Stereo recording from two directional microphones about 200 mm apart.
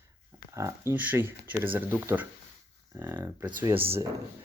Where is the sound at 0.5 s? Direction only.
15° right (ahead or behind).